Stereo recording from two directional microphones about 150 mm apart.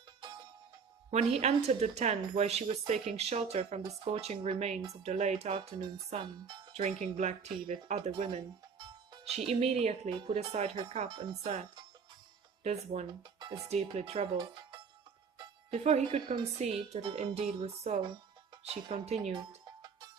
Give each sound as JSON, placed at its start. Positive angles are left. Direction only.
{"t": 1.1, "sound": "speech", "side_deg": -45}
{"t": 6.2, "sound": "speech", "side_deg": -30}
{"t": 6.8, "sound": "speech", "side_deg": -50}
{"t": 8.8, "sound": "speech", "side_deg": -40}
{"t": 12.6, "sound": "speech", "side_deg": -45}
{"t": 15.7, "sound": "speech", "side_deg": -45}
{"t": 19.3, "sound": "music", "side_deg": -30}